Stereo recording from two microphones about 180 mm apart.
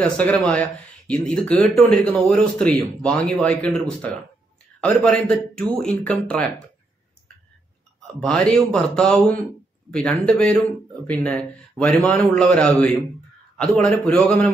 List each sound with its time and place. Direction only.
0.0 s speech: 5° left (ahead or behind)
8.2 s a man's voice: 5° left (ahead or behind)